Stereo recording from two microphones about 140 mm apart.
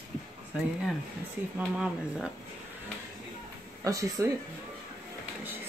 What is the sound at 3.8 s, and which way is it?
Speech, 25° right (ahead or behind).